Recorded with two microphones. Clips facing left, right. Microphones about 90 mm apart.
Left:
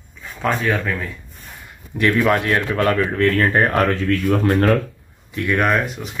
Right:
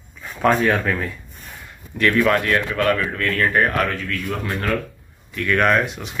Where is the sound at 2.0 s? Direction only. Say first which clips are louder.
Left 1 dB; 20° left (ahead or behind); by 4.8 s 45° left (ahead or behind).